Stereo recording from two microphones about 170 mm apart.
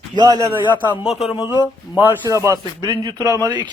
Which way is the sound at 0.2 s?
20° right (ahead or behind).